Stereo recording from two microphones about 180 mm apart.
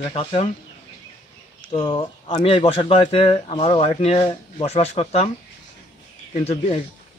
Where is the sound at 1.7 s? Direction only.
30° left (ahead or behind).